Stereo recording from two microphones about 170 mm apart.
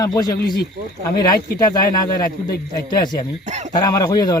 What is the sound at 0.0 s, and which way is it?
A man's voice, 20° left (ahead or behind).